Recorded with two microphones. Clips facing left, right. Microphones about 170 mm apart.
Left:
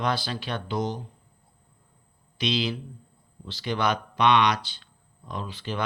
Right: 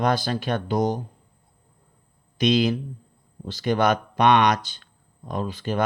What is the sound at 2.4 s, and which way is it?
Speech, 45° right (ahead or behind).